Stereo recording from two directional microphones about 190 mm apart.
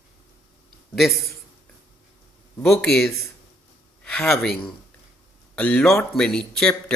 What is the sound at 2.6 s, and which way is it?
Speech, 5° left (ahead or behind).